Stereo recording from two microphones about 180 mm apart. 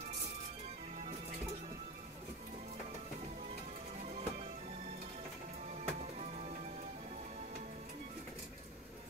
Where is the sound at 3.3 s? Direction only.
40° right (ahead or behind).